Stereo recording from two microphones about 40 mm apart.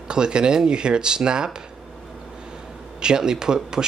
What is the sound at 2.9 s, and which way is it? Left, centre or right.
Speech, centre.